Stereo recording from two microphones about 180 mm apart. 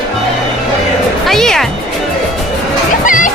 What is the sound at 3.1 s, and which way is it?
Music, 45° left (ahead or behind).